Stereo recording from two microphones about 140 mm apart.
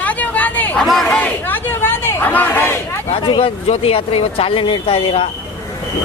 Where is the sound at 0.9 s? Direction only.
5° left (ahead or behind).